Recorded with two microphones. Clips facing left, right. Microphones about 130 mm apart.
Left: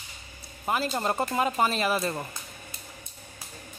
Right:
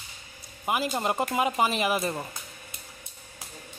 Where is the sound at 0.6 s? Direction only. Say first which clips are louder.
Even; 10° right (ahead or behind).